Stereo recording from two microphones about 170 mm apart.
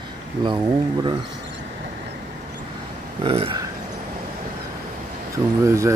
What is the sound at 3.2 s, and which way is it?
Speech, 30° right (ahead or behind).